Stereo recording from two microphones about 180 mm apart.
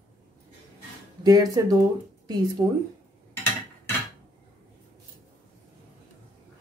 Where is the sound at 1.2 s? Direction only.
20° right (ahead or behind).